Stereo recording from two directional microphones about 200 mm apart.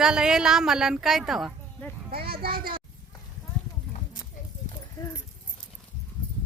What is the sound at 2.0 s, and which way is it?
Speech, 50° right (ahead or behind).